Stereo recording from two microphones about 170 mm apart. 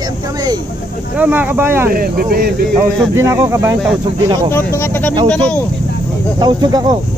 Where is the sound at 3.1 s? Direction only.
15° right (ahead or behind).